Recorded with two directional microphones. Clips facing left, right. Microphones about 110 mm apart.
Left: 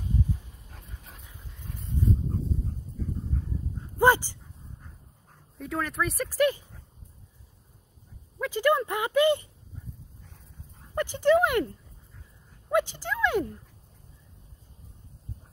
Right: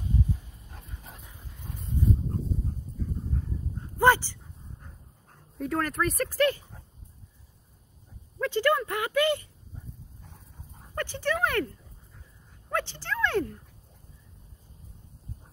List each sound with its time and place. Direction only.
4.0 s dog: 15° left (ahead or behind)
5.6 s speech: centre (ahead or behind)
8.4 s speech: 15° left (ahead or behind)
11.0 s speech: 15° left (ahead or behind)